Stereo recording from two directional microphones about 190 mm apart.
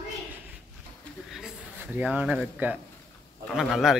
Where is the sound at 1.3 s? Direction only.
Centre (ahead or behind).